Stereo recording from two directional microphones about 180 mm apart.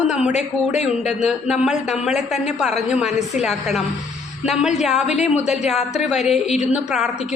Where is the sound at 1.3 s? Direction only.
Centre (ahead or behind).